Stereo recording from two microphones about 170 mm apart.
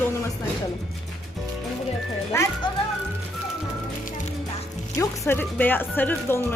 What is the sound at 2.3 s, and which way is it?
Music, 15° left (ahead or behind).